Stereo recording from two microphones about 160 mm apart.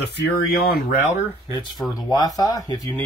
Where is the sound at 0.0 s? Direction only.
90° left; by 1.2 s 50° left (ahead or behind).